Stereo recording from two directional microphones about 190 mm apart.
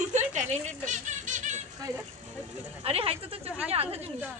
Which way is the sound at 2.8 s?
30° right (ahead or behind).